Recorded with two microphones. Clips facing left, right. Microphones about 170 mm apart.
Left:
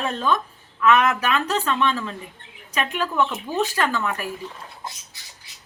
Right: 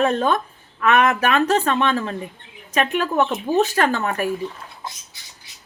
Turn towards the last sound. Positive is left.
turn(degrees=-45)  # may be behind; listen again after turning